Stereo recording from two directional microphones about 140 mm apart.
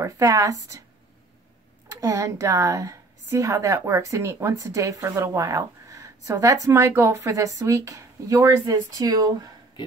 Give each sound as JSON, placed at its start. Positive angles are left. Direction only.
{"t": 0.0, "sound": "speech", "side_deg": -25}
{"t": 1.9, "sound": "speech", "side_deg": -25}